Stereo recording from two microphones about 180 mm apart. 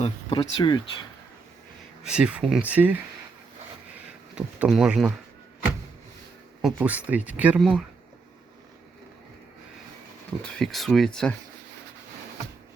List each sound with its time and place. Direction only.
0.0 s a sound: 30° left (ahead or behind)
0.5 s speech: 25° left (ahead or behind)
2.0 s speech: 5° right (ahead or behind)
4.4 s speech: 5° right (ahead or behind)
6.6 s speech: 5° right (ahead or behind)
10.4 s speech: 5° left (ahead or behind)